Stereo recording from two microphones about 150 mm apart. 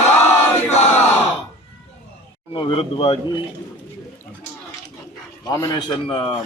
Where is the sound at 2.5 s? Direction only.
35° left (ahead or behind).